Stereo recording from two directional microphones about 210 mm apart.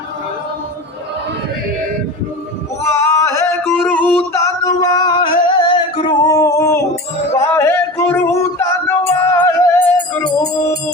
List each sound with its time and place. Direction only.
2.8 s singing: 15° left (ahead or behind)
7.3 s music: 10° left (ahead or behind)